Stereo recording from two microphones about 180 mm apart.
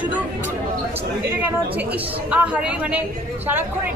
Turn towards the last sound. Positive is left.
turn(degrees=-5)  # may be behind; listen again after turning